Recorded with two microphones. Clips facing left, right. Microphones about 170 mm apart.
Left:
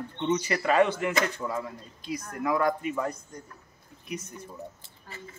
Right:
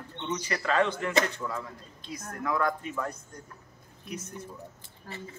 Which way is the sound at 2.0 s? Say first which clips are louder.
Left 4 dB; 10° left (ahead or behind).